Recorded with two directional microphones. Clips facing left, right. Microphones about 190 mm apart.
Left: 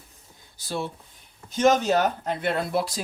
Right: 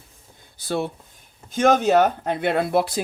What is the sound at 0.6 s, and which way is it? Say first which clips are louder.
Speech: right 5 dB; 60° right (ahead or behind).